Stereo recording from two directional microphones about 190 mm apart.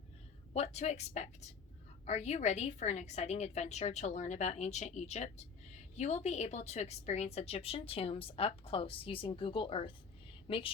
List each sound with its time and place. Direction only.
0.5 s a woman's voice: 35° left (ahead or behind)